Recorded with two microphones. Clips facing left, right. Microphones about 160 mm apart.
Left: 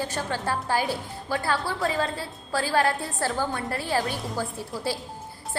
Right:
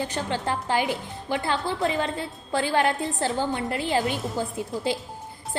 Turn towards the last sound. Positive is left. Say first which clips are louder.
# right 3 dB
turn(degrees=-20)  # may be behind; listen again after turning